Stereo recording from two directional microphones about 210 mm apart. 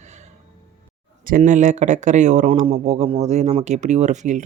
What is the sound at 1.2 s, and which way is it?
Speech, 40° right (ahead or behind).